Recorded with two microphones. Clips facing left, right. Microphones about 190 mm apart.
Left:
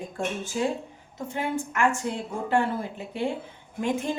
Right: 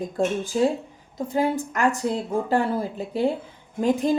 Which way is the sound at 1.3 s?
35° right (ahead or behind).